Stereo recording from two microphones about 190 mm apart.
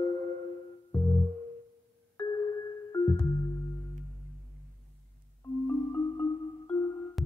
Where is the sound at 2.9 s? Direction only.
15° left (ahead or behind).